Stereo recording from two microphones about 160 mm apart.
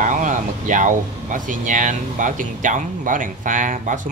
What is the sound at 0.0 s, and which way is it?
Speech, 55° right (ahead or behind).